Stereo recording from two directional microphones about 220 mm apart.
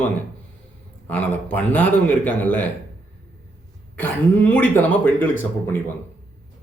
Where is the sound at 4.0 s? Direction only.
5° left (ahead or behind).